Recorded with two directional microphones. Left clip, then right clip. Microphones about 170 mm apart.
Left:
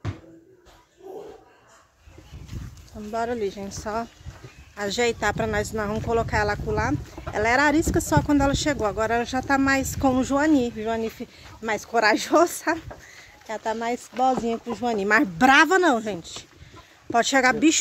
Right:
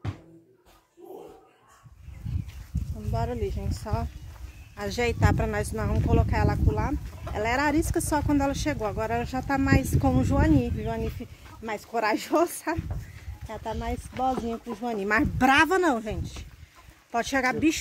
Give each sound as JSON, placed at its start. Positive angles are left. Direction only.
{"t": 3.1, "sound": "speech", "side_deg": 10}
{"t": 5.9, "sound": "speech", "side_deg": 20}